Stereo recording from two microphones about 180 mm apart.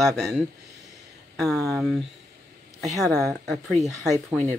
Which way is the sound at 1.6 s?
Centre (ahead or behind).